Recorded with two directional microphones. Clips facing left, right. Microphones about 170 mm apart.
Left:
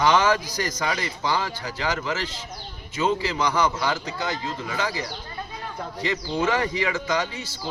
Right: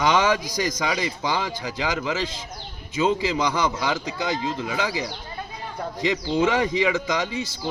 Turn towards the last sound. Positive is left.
turn(degrees=-15)  # may be behind; listen again after turning